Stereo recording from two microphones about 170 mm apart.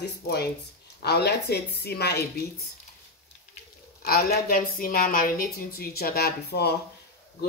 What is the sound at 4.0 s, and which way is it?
A woman's voice, 65° left (ahead or behind).